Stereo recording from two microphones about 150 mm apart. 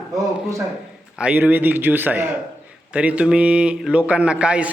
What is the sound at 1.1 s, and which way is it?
A man's voice, 10° right (ahead or behind).